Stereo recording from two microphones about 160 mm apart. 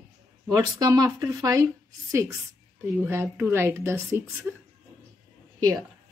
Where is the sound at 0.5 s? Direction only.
20° right (ahead or behind).